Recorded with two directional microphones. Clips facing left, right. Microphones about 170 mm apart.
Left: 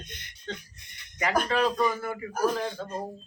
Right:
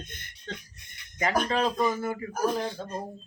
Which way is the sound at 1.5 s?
25° right (ahead or behind).